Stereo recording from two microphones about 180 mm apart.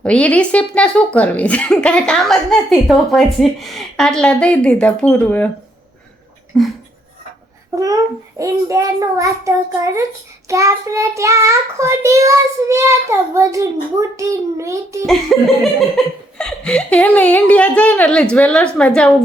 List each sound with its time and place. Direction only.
0.0 s speech: 5° left (ahead or behind)
7.8 s child singing: 20° right (ahead or behind)
15.0 s speech: centre (ahead or behind)